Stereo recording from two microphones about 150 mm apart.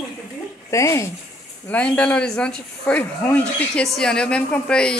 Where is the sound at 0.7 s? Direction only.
20° left (ahead or behind).